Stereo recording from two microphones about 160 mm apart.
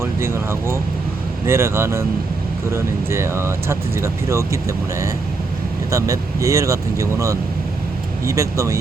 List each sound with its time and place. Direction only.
0.0 s speech: 15° right (ahead or behind)
5.9 s speech: 20° right (ahead or behind)